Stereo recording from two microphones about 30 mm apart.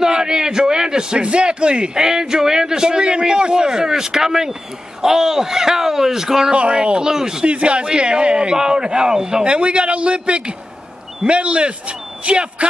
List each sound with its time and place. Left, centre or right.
0.0 s a sound: right
1.2 s speech: right
2.0 s a man's voice: right
6.5 s speech: right
7.0 s a man's voice: right
7.4 s a man's voice: right
9.4 s speech: right